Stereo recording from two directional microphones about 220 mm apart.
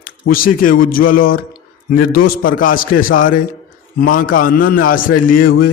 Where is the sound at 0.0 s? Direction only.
40° left (ahead or behind).